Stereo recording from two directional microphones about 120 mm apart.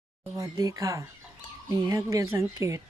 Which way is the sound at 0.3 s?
25° right (ahead or behind).